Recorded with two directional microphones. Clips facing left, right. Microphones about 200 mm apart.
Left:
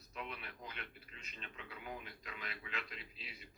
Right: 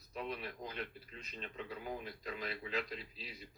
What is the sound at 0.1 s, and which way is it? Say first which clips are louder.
A man's voice: right 6 dB; 35° right (ahead or behind).